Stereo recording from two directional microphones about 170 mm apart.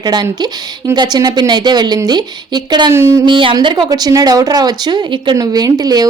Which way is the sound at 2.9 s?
15° right (ahead or behind).